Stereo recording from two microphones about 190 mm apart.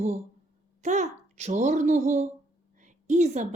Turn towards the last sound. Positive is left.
turn(degrees=-40)  # may be behind; listen again after turning